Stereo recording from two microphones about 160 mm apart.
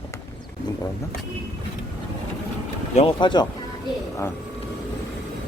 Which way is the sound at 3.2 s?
30° left (ahead or behind).